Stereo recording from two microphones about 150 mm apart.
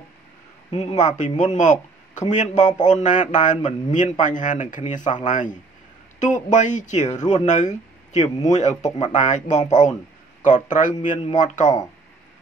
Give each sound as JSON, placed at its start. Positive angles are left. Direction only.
{"t": 0.7, "sound": "speech", "side_deg": 50}